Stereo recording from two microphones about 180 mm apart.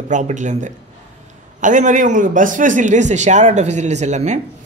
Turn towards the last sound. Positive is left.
turn(degrees=-40)  # may be behind; listen again after turning